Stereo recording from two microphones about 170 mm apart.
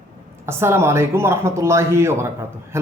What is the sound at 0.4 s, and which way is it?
Speech, 15° right (ahead or behind).